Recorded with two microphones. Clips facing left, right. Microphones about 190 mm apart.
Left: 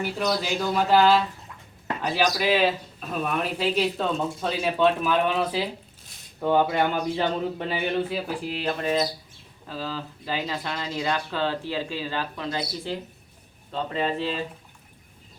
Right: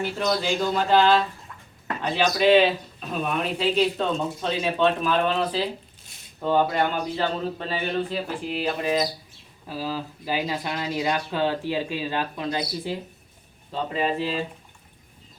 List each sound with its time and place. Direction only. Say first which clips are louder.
0.0 s a man's voice: right 1 dB; 10° left (ahead or behind)
8.3 s speech: right 1 dB; centre (ahead or behind)